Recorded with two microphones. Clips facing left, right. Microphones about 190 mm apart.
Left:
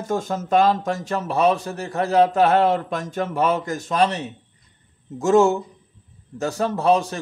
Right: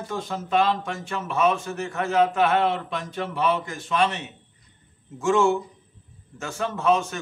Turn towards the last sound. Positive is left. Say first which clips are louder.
# left 3 dB
turn(degrees=35)  # may be behind; listen again after turning